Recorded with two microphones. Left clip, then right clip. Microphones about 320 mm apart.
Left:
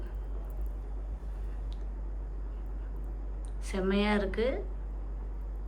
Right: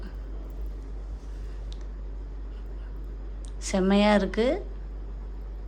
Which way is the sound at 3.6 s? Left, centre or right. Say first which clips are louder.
Right 8 dB; centre.